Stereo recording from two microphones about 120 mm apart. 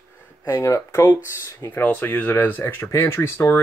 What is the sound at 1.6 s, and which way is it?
Speech, 15° left (ahead or behind).